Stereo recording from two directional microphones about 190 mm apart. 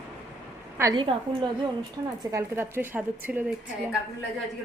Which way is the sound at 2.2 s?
15° right (ahead or behind).